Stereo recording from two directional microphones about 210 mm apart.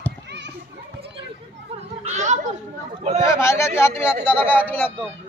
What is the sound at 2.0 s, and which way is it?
A man's voice, 35° right (ahead or behind).